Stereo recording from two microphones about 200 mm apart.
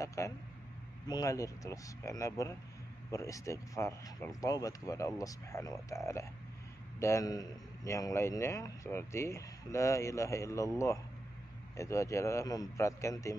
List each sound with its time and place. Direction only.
0.0 s a man's voice: 15° left (ahead or behind)
11.7 s a man's voice: 15° left (ahead or behind)